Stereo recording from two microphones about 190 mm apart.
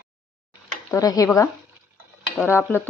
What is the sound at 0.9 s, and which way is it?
Speech, 20° left (ahead or behind).